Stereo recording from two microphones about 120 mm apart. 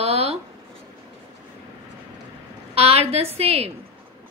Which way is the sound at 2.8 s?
55° right (ahead or behind).